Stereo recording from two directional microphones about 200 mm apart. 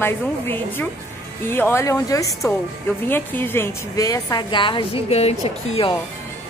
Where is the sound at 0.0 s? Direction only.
10° left (ahead or behind); by 5.3 s 30° left (ahead or behind).